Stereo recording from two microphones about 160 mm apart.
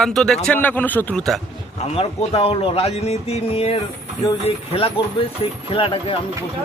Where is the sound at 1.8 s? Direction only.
40° left (ahead or behind).